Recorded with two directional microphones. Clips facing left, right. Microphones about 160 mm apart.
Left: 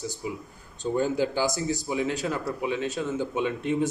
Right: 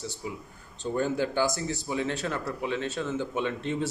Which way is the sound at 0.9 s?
15° left (ahead or behind).